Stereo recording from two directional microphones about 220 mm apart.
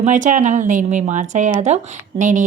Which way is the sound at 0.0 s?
35° right (ahead or behind).